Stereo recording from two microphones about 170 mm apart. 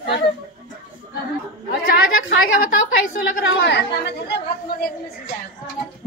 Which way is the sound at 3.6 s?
85° left.